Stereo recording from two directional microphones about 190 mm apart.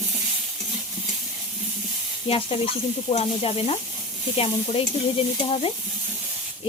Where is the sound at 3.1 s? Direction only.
30° left (ahead or behind).